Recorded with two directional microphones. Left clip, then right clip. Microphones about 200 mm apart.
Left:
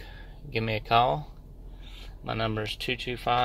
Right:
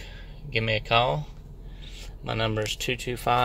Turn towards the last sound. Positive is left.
turn(degrees=-10)  # may be behind; listen again after turning